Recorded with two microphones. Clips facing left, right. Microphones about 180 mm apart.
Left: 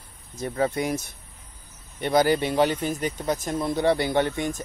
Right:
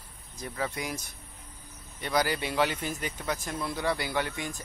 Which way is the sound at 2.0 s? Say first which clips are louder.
Left 8 dB; 25° left (ahead or behind).